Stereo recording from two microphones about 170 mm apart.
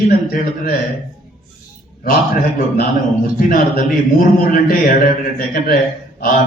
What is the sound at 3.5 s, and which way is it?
Speech, 55° left (ahead or behind).